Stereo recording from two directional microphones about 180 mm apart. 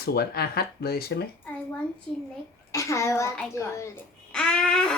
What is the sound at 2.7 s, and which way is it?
A child's voice, 15° left (ahead or behind).